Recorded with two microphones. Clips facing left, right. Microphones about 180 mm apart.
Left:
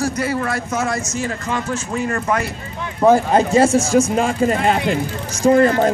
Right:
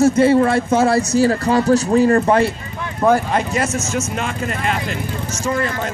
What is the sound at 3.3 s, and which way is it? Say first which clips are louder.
Speech: left 6 dB; 30° left (ahead or behind).